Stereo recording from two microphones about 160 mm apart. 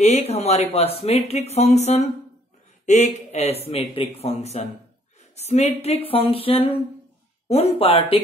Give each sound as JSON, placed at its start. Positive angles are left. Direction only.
{"t": 0.0, "sound": "speech", "side_deg": 45}